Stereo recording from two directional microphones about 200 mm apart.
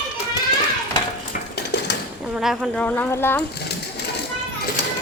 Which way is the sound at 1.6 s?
60° left (ahead or behind).